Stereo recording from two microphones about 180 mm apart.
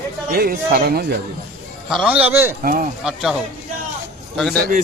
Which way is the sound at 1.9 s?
5° right (ahead or behind).